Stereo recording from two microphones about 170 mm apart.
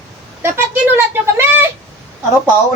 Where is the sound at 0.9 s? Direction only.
15° right (ahead or behind).